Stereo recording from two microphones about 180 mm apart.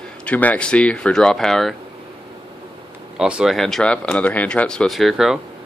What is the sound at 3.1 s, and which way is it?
Speech, 5° right (ahead or behind).